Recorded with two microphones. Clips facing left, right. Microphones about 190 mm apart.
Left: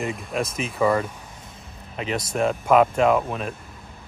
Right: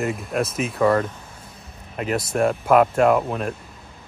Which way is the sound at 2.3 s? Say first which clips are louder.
Right 1 dB; 5° right (ahead or behind).